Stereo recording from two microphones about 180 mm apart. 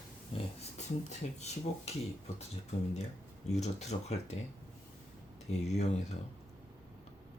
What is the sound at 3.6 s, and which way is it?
Speech, 35° left (ahead or behind).